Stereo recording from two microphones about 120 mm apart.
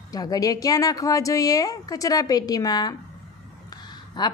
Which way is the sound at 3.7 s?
35° left (ahead or behind).